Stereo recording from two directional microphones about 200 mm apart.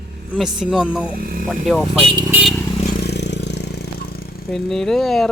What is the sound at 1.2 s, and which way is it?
Speech, 45° right (ahead or behind).